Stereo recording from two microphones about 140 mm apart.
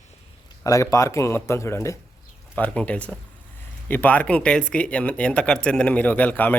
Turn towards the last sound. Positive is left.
turn(degrees=10)  # may be behind; listen again after turning